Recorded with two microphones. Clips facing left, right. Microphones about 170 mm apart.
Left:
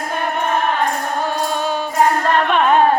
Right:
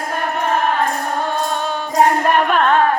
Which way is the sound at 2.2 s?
10° right (ahead or behind).